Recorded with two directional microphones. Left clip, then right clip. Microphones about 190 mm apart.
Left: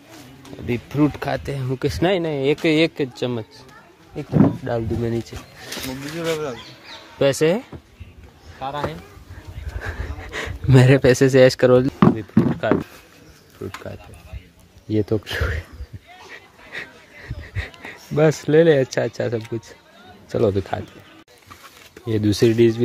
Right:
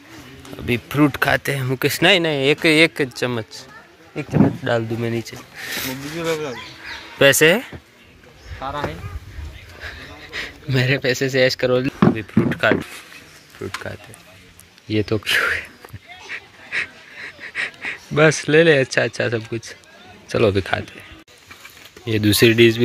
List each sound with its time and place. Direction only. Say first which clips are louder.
0.7 s speech: right 3 dB; centre (ahead or behind)
1.9 s speech: right 5 dB; 10° left (ahead or behind)
4.1 s speech: even; 5° right (ahead or behind)
5.0 s speech: even; 20° left (ahead or behind); by 7.7 s 5° left (ahead or behind)
8.5 s speech: right 1 dB; 25° left (ahead or behind)
9.8 s a sound: left 1 dB; 45° left (ahead or behind)
11.8 s speech: even; 10° left (ahead or behind)
13.6 s speech: right 3 dB; 5° right (ahead or behind)
14.9 s speech: right 3 dB; 20° left (ahead or behind)
16.3 s a sound: right 10 dB; 10° left (ahead or behind)
20.2 s speech: right 3 dB; 5° left (ahead or behind)
22.0 s speech: right 3 dB; 10° left (ahead or behind)